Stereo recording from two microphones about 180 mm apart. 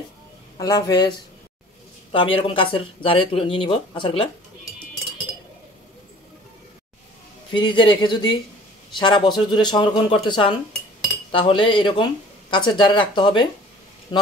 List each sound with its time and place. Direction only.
0.6 s speech: 20° left (ahead or behind)
2.1 s speech: 30° left (ahead or behind)
7.5 s speech: 25° left (ahead or behind)